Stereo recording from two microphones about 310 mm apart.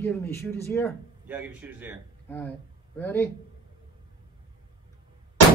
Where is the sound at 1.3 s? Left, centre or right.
Centre.